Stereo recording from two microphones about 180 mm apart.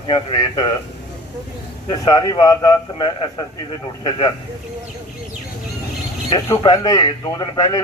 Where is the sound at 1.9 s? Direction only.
25° left (ahead or behind).